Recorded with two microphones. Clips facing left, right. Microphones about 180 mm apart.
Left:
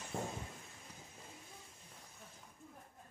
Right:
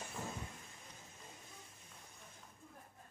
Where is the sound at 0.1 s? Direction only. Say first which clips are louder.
Left 6 dB; 55° left (ahead or behind).